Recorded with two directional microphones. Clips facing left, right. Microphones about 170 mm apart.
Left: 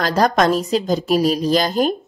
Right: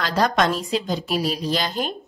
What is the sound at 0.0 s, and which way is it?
A woman's voice, 45° left (ahead or behind).